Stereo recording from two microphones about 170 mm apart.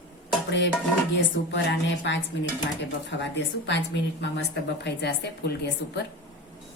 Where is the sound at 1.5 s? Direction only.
90° left.